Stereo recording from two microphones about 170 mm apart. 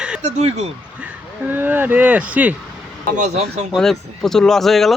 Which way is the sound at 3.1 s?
40° right (ahead or behind).